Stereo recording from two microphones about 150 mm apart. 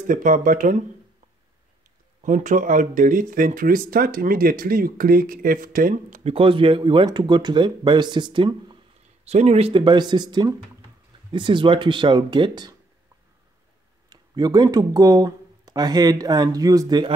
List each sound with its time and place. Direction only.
0.1 s speech: 65° right (ahead or behind)
2.2 s speech: 60° right (ahead or behind)
6.3 s speech: 35° right (ahead or behind)
9.2 s speech: 45° right (ahead or behind); by 12.7 s 30° right (ahead or behind)
14.0 s speech: 25° right (ahead or behind)